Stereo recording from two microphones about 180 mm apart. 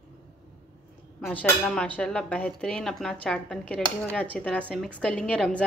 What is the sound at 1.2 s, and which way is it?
Speech, 10° left (ahead or behind).